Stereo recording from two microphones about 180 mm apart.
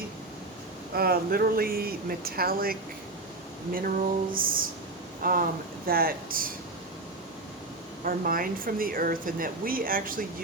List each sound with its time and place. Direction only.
0.9 s speech: 55° right (ahead or behind)
8.0 s speech: 50° right (ahead or behind)